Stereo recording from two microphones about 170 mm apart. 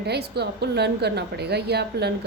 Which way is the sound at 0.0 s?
75° right (ahead or behind).